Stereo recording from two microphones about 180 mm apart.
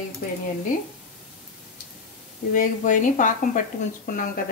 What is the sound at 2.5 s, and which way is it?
Speech, 45° left (ahead or behind).